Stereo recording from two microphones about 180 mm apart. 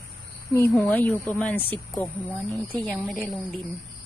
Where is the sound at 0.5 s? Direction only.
10° left (ahead or behind).